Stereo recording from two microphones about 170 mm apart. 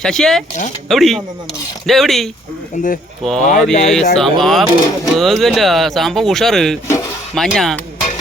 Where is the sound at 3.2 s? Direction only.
Centre (ahead or behind).